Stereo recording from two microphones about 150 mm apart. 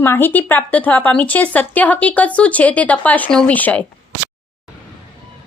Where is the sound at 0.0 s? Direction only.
15° left (ahead or behind).